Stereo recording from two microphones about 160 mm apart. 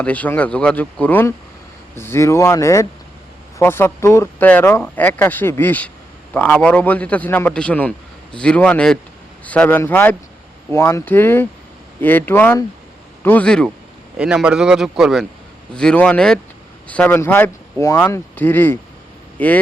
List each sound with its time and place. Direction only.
0.0 s a man's voice: 10° left (ahead or behind)
14.2 s a man's voice: 5° right (ahead or behind)